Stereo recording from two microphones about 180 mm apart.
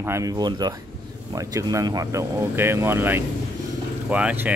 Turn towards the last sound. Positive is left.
turn(degrees=-10)  # may be behind; listen again after turning